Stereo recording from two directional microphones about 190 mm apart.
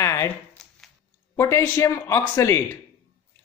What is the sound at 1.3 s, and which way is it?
Speech, 15° left (ahead or behind).